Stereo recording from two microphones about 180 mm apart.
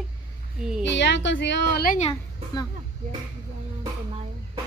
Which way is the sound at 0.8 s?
80° left.